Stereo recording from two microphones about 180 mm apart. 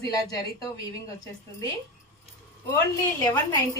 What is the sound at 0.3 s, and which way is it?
A woman's voice, 20° left (ahead or behind).